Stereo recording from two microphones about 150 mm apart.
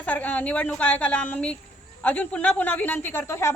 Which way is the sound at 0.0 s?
10° left (ahead or behind).